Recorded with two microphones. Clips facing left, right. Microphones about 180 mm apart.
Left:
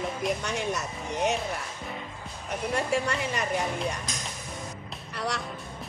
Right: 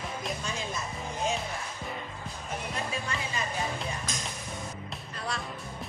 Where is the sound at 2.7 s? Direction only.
70° left (ahead or behind).